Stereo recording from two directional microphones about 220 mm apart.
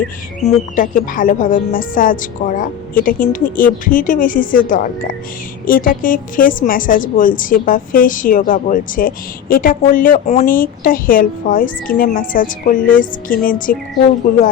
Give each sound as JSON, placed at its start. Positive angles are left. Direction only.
{"t": 0.4, "sound": "a woman's voice", "side_deg": 35}